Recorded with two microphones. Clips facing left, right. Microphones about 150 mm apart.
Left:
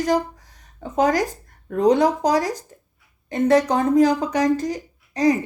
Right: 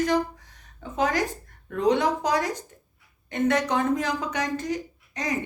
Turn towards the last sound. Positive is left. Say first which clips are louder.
# left 13 dB
turn(degrees=35)  # may be behind; listen again after turning